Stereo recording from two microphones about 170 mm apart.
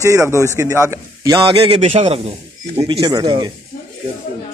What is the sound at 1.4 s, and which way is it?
A man's voice, 35° right (ahead or behind).